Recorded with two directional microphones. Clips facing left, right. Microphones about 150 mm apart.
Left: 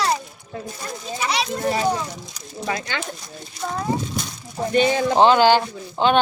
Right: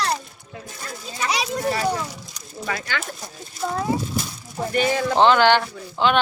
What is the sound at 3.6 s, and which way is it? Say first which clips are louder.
Speech: right 1 dB; 5° right (ahead or behind).